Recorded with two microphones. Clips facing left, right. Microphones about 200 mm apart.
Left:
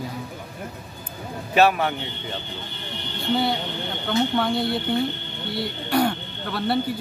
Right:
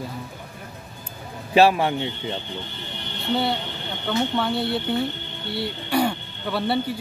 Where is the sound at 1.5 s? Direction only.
30° right (ahead or behind).